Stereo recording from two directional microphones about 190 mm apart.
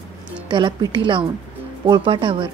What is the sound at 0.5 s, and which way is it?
A woman's voice, 25° right (ahead or behind).